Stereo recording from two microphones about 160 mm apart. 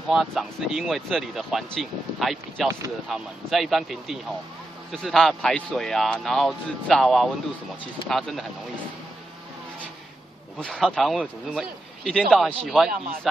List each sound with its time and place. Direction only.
0.1 s speech: centre (ahead or behind)
10.6 s speech: 5° left (ahead or behind)